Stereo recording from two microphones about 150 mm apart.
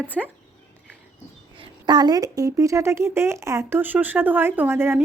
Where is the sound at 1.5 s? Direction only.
30° right (ahead or behind).